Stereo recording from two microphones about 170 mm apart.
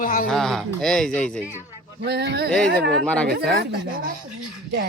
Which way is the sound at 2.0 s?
75° right (ahead or behind).